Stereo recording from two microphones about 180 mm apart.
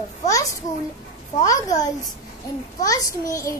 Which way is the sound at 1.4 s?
20° left (ahead or behind).